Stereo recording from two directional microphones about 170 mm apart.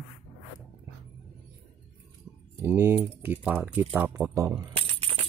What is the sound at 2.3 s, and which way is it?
Keys jangling, centre (ahead or behind).